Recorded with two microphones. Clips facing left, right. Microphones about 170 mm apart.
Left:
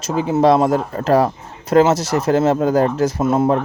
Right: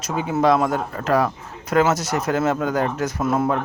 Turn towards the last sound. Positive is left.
turn(degrees=25)  # may be behind; listen again after turning